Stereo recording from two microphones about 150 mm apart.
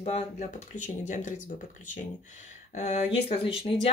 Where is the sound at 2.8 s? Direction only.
45° left (ahead or behind).